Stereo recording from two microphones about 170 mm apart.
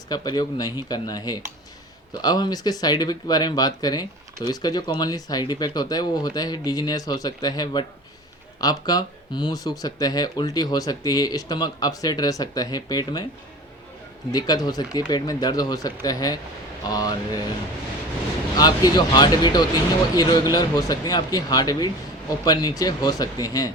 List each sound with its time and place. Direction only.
0.1 s speech: 25° left (ahead or behind)
14.3 s speech: 25° left (ahead or behind)
18.5 s speech: 25° left (ahead or behind)